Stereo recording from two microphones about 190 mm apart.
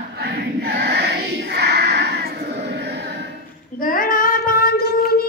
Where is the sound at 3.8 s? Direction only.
45° left (ahead or behind).